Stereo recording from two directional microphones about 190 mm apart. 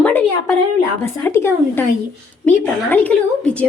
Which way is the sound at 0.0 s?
10° left (ahead or behind).